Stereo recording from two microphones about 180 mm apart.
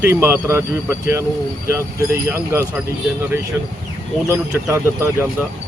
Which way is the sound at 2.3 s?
15° right (ahead or behind).